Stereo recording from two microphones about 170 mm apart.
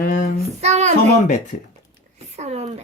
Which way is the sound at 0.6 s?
40° right (ahead or behind).